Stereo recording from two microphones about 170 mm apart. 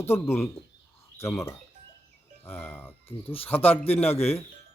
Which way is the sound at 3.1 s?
35° left (ahead or behind).